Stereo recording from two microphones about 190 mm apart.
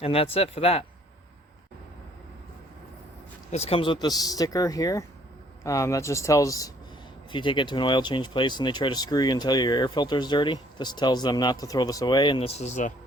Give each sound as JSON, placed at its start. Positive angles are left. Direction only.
{"t": 0.0, "sound": "speech", "side_deg": 30}
{"t": 3.5, "sound": "speech", "side_deg": 35}